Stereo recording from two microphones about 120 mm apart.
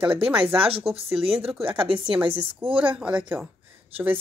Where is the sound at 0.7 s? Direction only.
50° right (ahead or behind).